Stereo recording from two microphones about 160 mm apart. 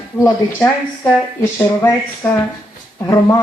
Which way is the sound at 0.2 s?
10° left (ahead or behind).